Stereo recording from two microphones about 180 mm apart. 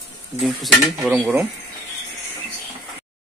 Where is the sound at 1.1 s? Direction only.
10° right (ahead or behind).